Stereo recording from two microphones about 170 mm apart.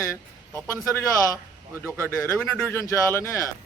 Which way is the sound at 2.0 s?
15° left (ahead or behind).